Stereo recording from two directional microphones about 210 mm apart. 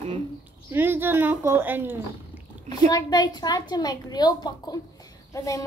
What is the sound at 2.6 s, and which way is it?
A child's voice, 20° left (ahead or behind).